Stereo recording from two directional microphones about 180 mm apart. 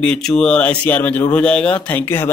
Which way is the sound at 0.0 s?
5° left (ahead or behind).